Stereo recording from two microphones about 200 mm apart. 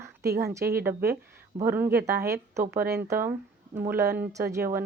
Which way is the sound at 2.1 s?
50° right (ahead or behind).